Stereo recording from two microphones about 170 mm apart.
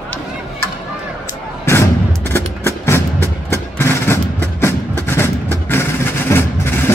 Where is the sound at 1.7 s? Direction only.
15° left (ahead or behind).